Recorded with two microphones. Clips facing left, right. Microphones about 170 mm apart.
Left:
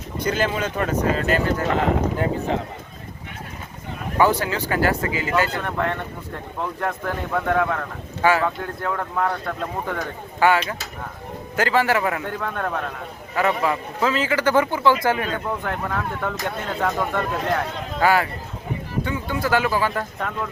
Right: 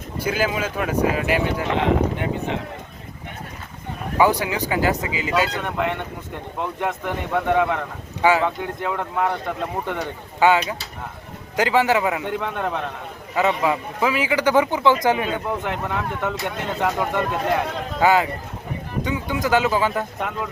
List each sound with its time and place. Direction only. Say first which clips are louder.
0.2 s speech: even; 5° right (ahead or behind)
1.7 s speech: right 1 dB; 40° left (ahead or behind)
4.2 s speech: right 1 dB; 15° right (ahead or behind)